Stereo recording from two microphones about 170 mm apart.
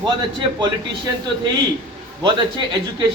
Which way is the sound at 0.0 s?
30° right (ahead or behind).